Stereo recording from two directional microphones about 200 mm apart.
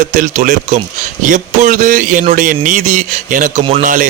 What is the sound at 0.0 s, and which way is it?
A man's voice, 40° right (ahead or behind).